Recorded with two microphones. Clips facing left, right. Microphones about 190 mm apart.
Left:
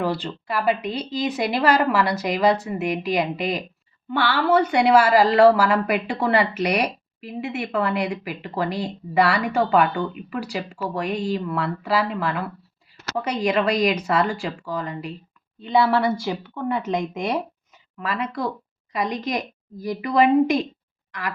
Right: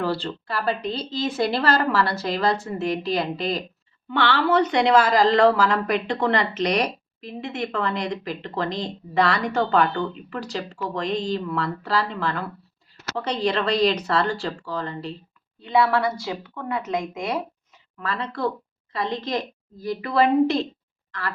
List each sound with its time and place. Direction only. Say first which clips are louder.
0.0 s a woman's voice: left 1 dB; 15° left (ahead or behind)
15.6 s speech: left 1 dB; 30° left (ahead or behind)
18.0 s a woman's voice: even; 15° left (ahead or behind)
21.1 s a sound: left 1 dB; 15° left (ahead or behind)